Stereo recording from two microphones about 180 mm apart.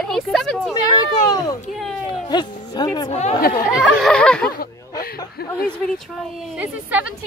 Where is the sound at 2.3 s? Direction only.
25° left (ahead or behind).